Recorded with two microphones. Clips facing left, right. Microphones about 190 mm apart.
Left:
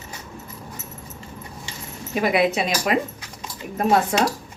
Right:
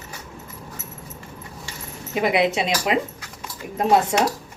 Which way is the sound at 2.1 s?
20° right (ahead or behind).